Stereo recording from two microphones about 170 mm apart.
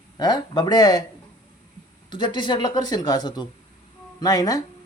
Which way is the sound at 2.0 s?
25° left (ahead or behind).